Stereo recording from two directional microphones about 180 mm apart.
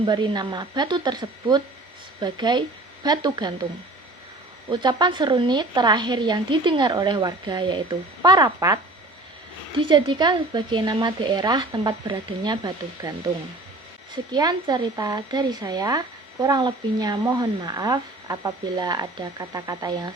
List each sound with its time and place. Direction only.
0.0 s speech: 25° right (ahead or behind)
4.7 s speech: 25° right (ahead or behind)
14.3 s speech: 20° right (ahead or behind)